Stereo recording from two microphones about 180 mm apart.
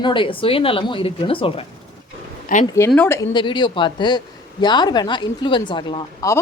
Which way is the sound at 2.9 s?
10° left (ahead or behind).